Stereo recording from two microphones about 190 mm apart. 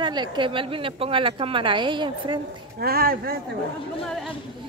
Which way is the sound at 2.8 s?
50° right (ahead or behind).